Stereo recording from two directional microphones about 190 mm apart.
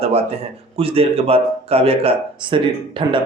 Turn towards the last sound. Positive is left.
turn(degrees=-25)  # may be behind; listen again after turning